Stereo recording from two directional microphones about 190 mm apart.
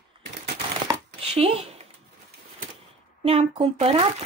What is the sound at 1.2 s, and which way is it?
Speech, 30° right (ahead or behind).